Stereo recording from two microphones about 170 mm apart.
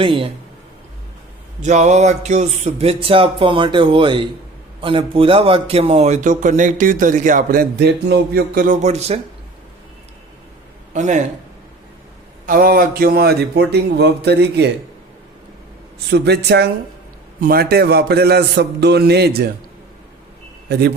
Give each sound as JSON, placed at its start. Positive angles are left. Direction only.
{"t": 0.0, "sound": "speech", "side_deg": -30}
{"t": 1.6, "sound": "a man's voice", "side_deg": -45}
{"t": 10.9, "sound": "a man's voice", "side_deg": -45}
{"t": 12.5, "sound": "speech", "side_deg": -55}
{"t": 16.0, "sound": "speech", "side_deg": -80}
{"t": 17.4, "sound": "speech", "side_deg": -65}
{"t": 20.7, "sound": "a man's voice", "side_deg": -70}